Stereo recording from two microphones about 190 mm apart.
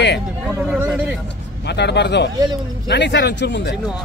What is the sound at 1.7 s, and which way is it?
Speech, 65° left (ahead or behind).